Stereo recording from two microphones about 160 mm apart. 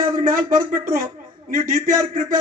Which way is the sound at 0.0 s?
55° right (ahead or behind).